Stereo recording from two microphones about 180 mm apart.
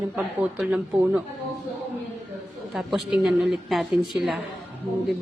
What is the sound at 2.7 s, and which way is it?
A woman's voice, centre (ahead or behind).